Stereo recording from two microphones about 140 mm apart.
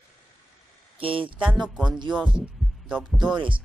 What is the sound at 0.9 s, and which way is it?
Speech, 40° right (ahead or behind).